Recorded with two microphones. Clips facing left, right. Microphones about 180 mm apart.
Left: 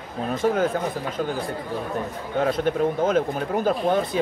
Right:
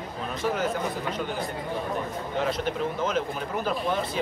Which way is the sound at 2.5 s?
50° left (ahead or behind).